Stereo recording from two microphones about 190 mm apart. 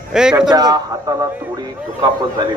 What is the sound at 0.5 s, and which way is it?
Speech, 20° right (ahead or behind).